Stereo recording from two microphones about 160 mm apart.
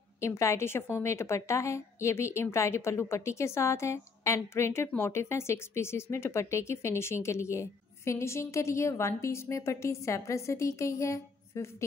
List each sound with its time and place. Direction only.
0.2 s a woman's voice: 20° left (ahead or behind)